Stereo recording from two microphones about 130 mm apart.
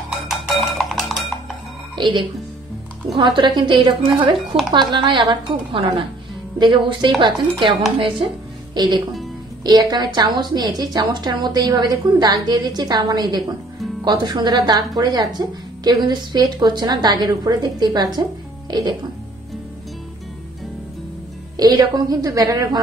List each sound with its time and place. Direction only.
0.1 s music: centre (ahead or behind)
2.0 s speech: 35° right (ahead or behind)
3.3 s speech: 35° right (ahead or behind)
8.7 s speech: 35° right (ahead or behind)
21.5 s a woman's voice: 30° right (ahead or behind)